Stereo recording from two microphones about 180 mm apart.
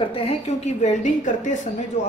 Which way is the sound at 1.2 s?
45° left (ahead or behind).